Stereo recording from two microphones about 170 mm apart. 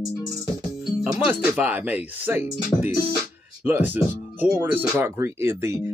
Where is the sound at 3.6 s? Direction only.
10° right (ahead or behind).